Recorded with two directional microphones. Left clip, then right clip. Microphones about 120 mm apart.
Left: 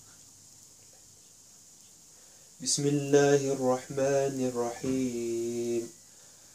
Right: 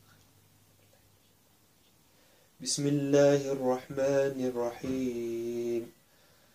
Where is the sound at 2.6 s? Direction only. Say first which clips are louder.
Left 1 dB; 15° right (ahead or behind).